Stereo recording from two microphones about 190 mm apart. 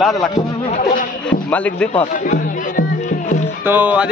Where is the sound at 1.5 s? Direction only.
10° left (ahead or behind).